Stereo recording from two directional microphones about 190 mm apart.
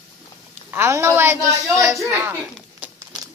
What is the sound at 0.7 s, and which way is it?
A woman's voice, 15° right (ahead or behind).